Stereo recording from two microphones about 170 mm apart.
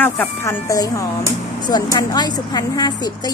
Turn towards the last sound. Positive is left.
turn(degrees=25)  # may be behind; listen again after turning